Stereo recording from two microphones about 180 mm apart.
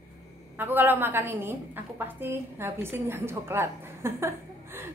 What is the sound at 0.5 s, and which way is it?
A woman's voice, 10° right (ahead or behind).